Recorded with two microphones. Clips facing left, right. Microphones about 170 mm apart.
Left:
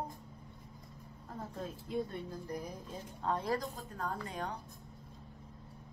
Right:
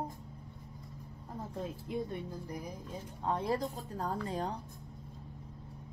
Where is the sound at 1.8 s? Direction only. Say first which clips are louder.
Left 2 dB; 15° right (ahead or behind); by 4.5 s 30° right (ahead or behind).